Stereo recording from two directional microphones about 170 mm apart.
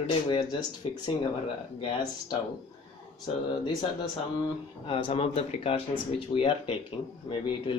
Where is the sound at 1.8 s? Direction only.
30° left (ahead or behind).